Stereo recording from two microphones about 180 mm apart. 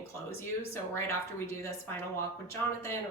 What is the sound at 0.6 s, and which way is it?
Speech, 15° left (ahead or behind).